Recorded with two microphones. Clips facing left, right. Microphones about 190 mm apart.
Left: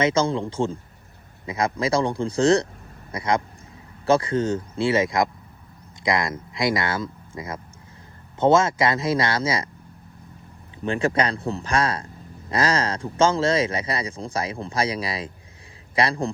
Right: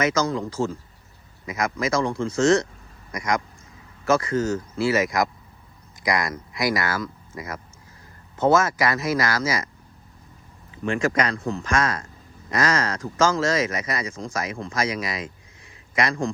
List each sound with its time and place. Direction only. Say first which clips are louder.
0.0 s a man's voice: left 2 dB; 30° left (ahead or behind)
10.8 s a man's voice: left 1 dB; 30° left (ahead or behind)